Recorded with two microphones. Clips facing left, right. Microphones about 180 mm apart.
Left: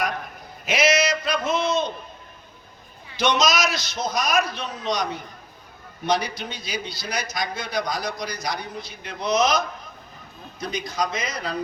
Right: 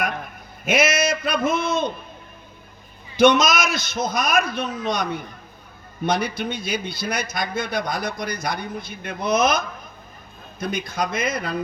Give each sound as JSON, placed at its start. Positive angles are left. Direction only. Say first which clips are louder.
{"t": 0.6, "sound": "a man's voice", "louder": "right 1 dB", "side_deg": -50}
{"t": 3.2, "sound": "a man's voice", "louder": "right 5 dB", "side_deg": -55}